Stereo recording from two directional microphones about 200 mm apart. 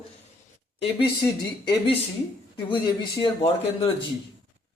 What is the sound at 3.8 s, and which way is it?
Speech, 25° left (ahead or behind).